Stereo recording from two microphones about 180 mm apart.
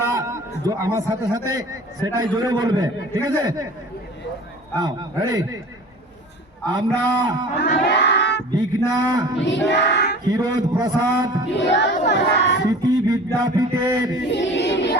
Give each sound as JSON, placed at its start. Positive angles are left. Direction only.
{"t": 0.1, "sound": "a sound", "side_deg": -15}
{"t": 0.6, "sound": "a man's voice", "side_deg": -20}
{"t": 4.8, "sound": "a man's voice", "side_deg": -25}
{"t": 6.7, "sound": "a man's voice", "side_deg": -25}
{"t": 7.6, "sound": "crowd", "side_deg": 70}
{"t": 9.0, "sound": "a man's voice", "side_deg": -20}
{"t": 9.4, "sound": "child singing", "side_deg": 80}
{"t": 10.2, "sound": "a man's voice", "side_deg": -20}
{"t": 11.5, "sound": "music", "side_deg": 75}
{"t": 12.8, "sound": "a sound", "side_deg": -20}
{"t": 14.3, "sound": "a sound", "side_deg": 75}